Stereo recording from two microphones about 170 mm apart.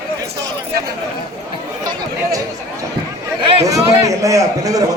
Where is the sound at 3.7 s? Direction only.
20° right (ahead or behind).